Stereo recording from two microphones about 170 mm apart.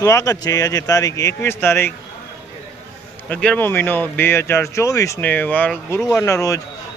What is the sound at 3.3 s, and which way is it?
A man's voice, 5° left (ahead or behind).